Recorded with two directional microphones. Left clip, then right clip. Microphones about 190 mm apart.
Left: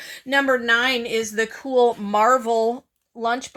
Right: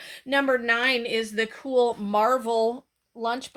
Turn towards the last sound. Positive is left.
turn(degrees=35)  # may be behind; listen again after turning